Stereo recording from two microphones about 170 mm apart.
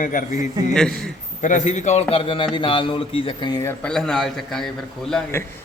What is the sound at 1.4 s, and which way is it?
A man's voice, 45° left (ahead or behind).